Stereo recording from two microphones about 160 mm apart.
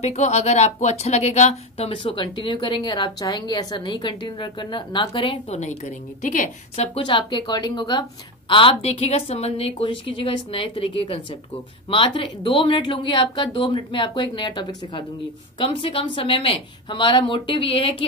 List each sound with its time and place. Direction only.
0.0 s speech: 45° left (ahead or behind)
5.6 s a woman's voice: 50° left (ahead or behind)
7.0 s speech: 30° left (ahead or behind)